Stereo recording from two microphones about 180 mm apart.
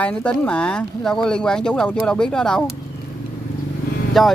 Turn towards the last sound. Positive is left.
turn(degrees=0)  # may be behind; listen again after turning